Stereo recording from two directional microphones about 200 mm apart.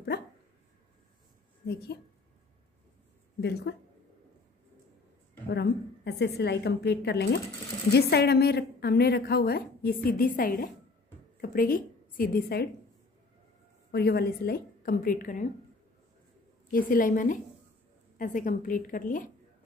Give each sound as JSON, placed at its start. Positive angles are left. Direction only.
{"t": 1.7, "sound": "a woman's voice", "side_deg": 55}
{"t": 3.3, "sound": "a woman's voice", "side_deg": 55}
{"t": 5.5, "sound": "a woman's voice", "side_deg": 55}
{"t": 13.9, "sound": "a woman's voice", "side_deg": 55}
{"t": 16.7, "sound": "a woman's voice", "side_deg": 40}